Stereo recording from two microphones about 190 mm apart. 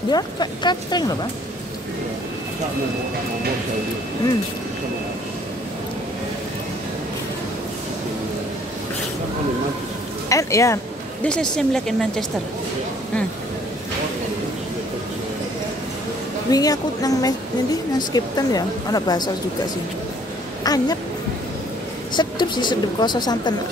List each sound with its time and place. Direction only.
0.1 s a woman's voice: 20° left (ahead or behind)
10.3 s speech: 15° left (ahead or behind)
11.2 s speech: 5° left (ahead or behind)
16.4 s a woman's voice: 20° left (ahead or behind)
20.6 s a woman's voice: 20° left (ahead or behind)
22.1 s a woman's voice: 25° left (ahead or behind)